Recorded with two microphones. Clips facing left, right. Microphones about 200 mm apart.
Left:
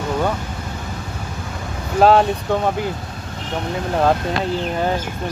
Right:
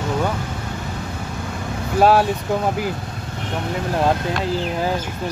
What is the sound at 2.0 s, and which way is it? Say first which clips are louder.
Speech: left 2 dB; 5° right (ahead or behind).